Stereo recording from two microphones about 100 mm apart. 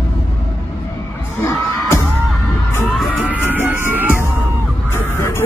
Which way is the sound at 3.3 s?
20° right (ahead or behind).